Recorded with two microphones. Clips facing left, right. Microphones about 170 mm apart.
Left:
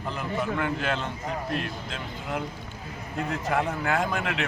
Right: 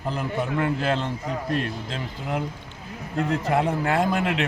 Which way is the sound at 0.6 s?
35° right (ahead or behind).